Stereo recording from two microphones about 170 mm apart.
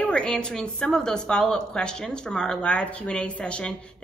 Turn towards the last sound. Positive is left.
turn(degrees=5)  # may be behind; listen again after turning